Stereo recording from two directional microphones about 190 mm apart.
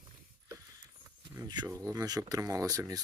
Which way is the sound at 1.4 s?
20° right (ahead or behind).